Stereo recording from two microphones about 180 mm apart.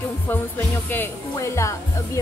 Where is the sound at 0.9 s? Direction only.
15° left (ahead or behind).